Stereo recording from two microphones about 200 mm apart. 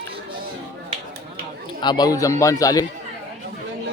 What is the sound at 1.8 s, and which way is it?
Speech, 20° left (ahead or behind).